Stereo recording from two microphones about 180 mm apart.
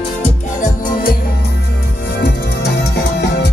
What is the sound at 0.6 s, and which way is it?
Music, 45° left (ahead or behind).